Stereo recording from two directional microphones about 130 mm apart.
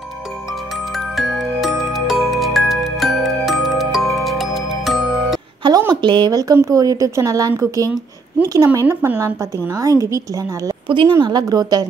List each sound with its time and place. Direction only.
0.9 s music: centre (ahead or behind)
5.6 s a sound: 30° right (ahead or behind)
5.9 s speech: 35° right (ahead or behind)